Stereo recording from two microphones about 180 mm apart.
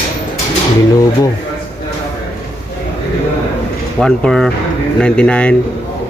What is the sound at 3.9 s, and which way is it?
Speech, 5° left (ahead or behind).